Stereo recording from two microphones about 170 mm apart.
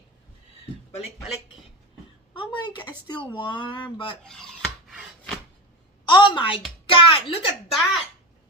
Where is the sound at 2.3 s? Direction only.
30° left (ahead or behind).